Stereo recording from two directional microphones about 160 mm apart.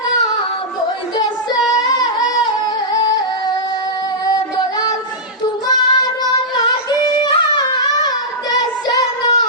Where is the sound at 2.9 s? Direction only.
25° left (ahead or behind).